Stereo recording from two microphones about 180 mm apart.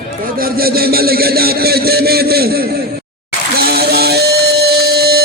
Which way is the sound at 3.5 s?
60° right (ahead or behind).